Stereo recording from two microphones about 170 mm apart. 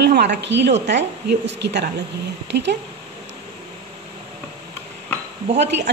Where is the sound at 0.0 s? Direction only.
80° right.